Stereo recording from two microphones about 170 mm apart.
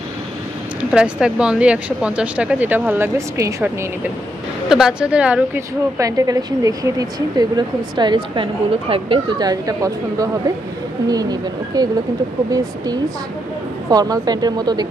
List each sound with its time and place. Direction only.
0.9 s speech: 5° right (ahead or behind)
4.6 s speech: 5° right (ahead or behind)
5.9 s a woman's voice: 20° right (ahead or behind)